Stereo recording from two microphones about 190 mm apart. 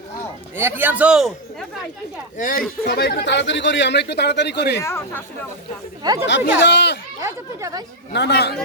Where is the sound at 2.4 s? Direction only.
45° left (ahead or behind).